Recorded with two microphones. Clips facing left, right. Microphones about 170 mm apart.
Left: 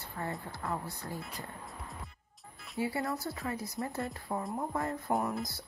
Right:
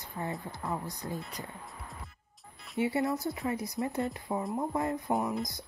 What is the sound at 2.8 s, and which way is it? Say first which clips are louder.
Speech: right 4 dB; 20° right (ahead or behind).